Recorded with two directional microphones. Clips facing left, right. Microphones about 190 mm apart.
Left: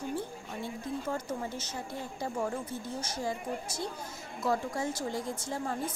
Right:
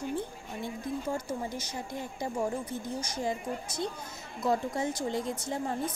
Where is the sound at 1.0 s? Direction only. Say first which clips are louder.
Right 1 dB; 10° right (ahead or behind).